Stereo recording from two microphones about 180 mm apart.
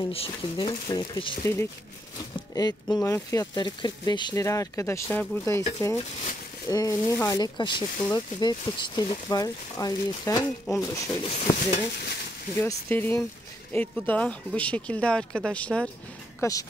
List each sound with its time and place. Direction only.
0.1 s speech: 30° left (ahead or behind)
2.5 s speech: 20° left (ahead or behind)
11.2 s speech: 30° left (ahead or behind)
12.5 s speech: 10° left (ahead or behind)
16.3 s speech: 20° left (ahead or behind)